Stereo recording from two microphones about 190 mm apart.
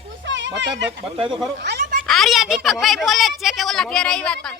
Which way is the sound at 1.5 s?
60° right (ahead or behind).